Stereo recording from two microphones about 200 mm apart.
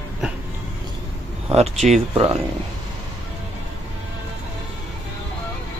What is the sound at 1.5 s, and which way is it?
Speech, 35° right (ahead or behind).